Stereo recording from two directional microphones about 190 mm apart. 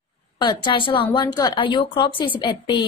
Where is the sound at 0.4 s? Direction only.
25° left (ahead or behind).